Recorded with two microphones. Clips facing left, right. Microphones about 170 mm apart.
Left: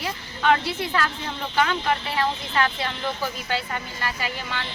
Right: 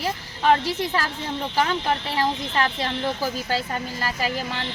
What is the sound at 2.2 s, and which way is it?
Speech, 35° right (ahead or behind).